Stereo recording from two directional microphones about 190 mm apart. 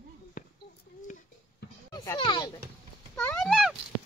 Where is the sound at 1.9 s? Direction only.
20° left (ahead or behind).